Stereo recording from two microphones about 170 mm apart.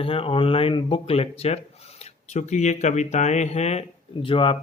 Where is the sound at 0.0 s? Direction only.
30° left (ahead or behind).